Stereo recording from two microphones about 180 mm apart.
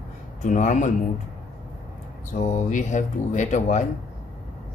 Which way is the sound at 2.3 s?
45° left (ahead or behind).